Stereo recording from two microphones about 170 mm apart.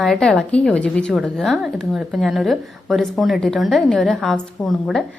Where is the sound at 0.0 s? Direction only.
Centre (ahead or behind).